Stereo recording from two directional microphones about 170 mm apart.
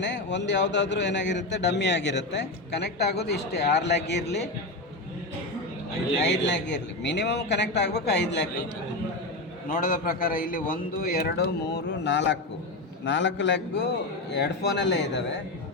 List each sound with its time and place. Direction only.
0.0 s a man's voice: 90° left
6.2 s a man's voice: 90° left
9.6 s a man's voice: 55° left (ahead or behind); by 15.2 s 90° left